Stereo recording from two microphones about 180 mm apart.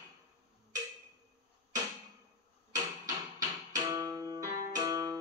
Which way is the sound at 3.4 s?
20° right (ahead or behind).